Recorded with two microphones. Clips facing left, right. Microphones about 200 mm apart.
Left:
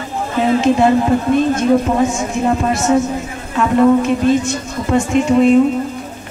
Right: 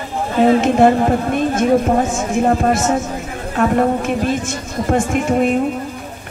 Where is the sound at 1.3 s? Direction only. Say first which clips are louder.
Left 4 dB; 50° right (ahead or behind).